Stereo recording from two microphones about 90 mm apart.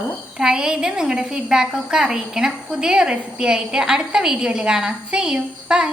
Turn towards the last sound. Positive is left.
turn(degrees=-10)  # may be behind; listen again after turning